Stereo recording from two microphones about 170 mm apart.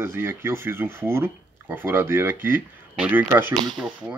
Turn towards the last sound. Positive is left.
turn(degrees=-10)  # may be behind; listen again after turning